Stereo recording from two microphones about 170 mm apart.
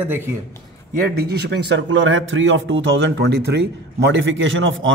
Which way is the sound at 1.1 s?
65° right (ahead or behind).